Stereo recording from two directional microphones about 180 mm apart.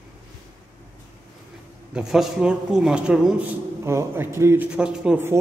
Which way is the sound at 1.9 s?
5° right (ahead or behind).